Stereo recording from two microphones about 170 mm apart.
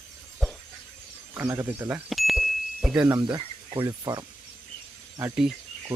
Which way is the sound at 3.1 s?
25° right (ahead or behind).